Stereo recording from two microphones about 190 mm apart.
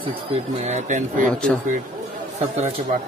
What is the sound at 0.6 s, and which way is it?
Speech, 40° right (ahead or behind).